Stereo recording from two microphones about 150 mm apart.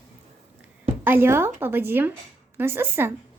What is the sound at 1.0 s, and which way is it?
Speech, 15° right (ahead or behind).